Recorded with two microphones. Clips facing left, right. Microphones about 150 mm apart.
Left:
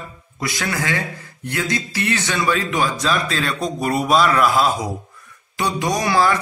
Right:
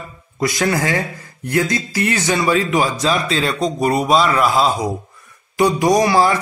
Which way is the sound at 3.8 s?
Centre (ahead or behind).